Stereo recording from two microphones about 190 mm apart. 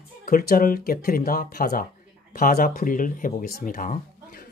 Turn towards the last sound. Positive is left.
turn(degrees=50)  # may be behind; listen again after turning